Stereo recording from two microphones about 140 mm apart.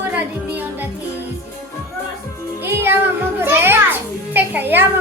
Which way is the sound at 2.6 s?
15° right (ahead or behind).